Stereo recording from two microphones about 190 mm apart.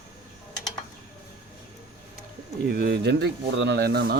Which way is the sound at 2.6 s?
50° right (ahead or behind).